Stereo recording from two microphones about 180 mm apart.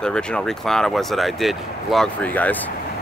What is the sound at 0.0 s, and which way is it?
Speech, 5° left (ahead or behind).